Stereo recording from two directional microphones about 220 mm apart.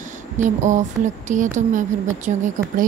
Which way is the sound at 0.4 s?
35° right (ahead or behind).